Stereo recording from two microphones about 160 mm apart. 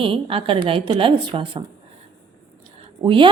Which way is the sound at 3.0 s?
30° right (ahead or behind).